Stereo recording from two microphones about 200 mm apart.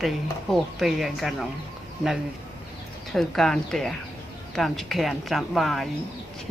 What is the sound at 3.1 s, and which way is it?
Speech, centre (ahead or behind).